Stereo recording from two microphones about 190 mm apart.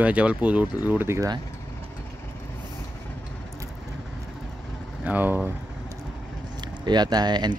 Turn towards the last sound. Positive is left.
turn(degrees=-20)  # may be behind; listen again after turning